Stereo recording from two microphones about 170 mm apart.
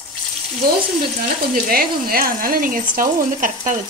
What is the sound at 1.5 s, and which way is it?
Speech, 60° right (ahead or behind).